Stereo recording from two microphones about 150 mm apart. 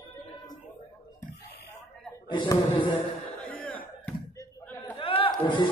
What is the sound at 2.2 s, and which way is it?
Speech, 30° left (ahead or behind).